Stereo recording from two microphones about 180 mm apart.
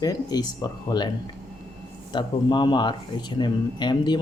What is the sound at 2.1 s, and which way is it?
Speech, 25° left (ahead or behind).